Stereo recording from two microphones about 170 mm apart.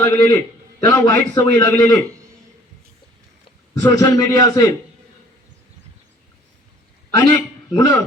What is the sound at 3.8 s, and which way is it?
Speech, 25° left (ahead or behind).